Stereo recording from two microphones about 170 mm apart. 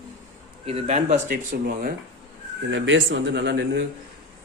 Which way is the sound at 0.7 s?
40° right (ahead or behind).